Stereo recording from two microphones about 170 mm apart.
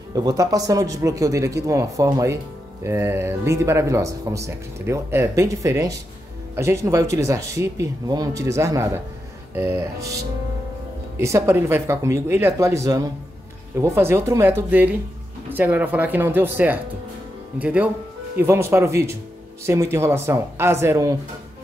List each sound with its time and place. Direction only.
0.1 s speech: 25° right (ahead or behind)